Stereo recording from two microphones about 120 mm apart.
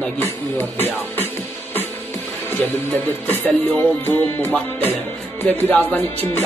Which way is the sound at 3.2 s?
15° left (ahead or behind).